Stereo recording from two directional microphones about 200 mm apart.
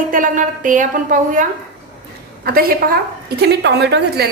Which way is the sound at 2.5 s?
50° right (ahead or behind).